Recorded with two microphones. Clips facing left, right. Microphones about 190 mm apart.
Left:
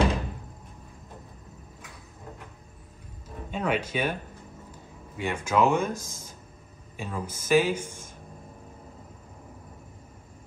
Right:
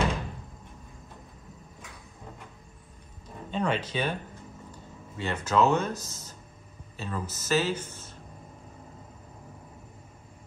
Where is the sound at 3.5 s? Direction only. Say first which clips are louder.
Left 1 dB; 10° left (ahead or behind).